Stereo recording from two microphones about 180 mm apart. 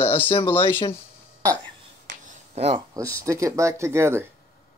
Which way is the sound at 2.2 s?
35° right (ahead or behind).